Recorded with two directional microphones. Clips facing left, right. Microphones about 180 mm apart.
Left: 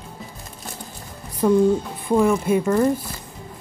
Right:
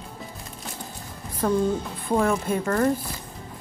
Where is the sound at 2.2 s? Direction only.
10° left (ahead or behind).